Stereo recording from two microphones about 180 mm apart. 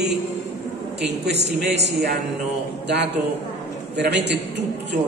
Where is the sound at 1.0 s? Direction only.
70° right (ahead or behind).